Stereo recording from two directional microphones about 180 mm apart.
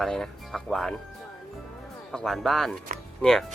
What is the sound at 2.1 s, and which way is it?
Speech, centre (ahead or behind).